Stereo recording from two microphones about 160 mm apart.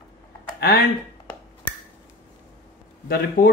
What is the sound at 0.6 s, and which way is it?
Speech, 75° left (ahead or behind).